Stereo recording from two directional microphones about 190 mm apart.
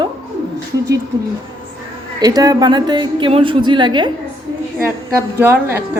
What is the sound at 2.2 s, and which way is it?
A woman's voice, 20° right (ahead or behind).